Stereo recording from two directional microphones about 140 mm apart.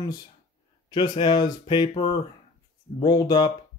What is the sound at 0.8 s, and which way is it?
Speech, 30° left (ahead or behind).